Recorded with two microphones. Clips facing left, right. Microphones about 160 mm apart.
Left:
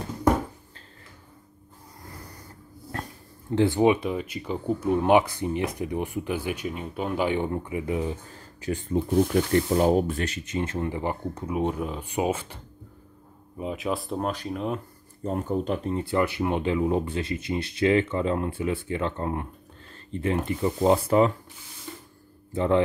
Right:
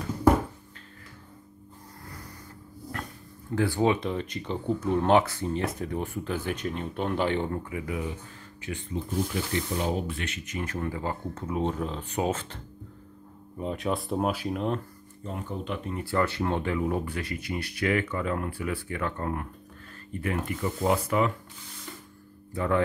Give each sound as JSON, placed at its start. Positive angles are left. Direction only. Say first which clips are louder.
{"t": 3.5, "sound": "speech", "louder": "left 4 dB", "side_deg": 20}
{"t": 8.5, "sound": "speech", "louder": "left 7 dB", "side_deg": 40}
{"t": 13.6, "sound": "speech", "louder": "left 1 dB", "side_deg": 5}
{"t": 15.2, "sound": "speech", "louder": "left 7 dB", "side_deg": 40}
{"t": 16.0, "sound": "speech", "louder": "right 1 dB", "side_deg": 20}
{"t": 22.5, "sound": "speech", "louder": "left 4 dB", "side_deg": 25}